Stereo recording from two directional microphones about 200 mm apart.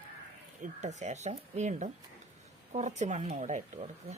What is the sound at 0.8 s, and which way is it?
Speech, 35° right (ahead or behind).